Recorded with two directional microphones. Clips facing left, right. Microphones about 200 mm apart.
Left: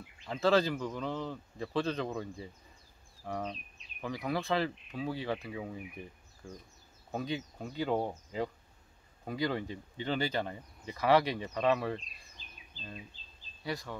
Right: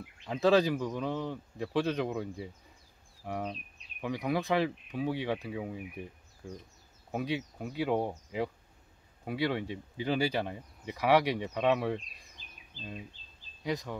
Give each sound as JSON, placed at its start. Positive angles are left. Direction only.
{"t": 0.3, "sound": "speech", "side_deg": -15}
{"t": 7.1, "sound": "speech", "side_deg": -10}
{"t": 13.7, "sound": "speech", "side_deg": -15}